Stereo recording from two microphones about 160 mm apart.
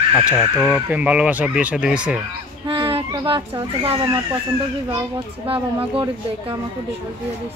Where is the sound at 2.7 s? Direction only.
35° right (ahead or behind).